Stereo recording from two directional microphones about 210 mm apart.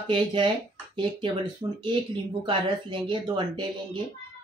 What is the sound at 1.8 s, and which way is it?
Speech, 20° right (ahead or behind).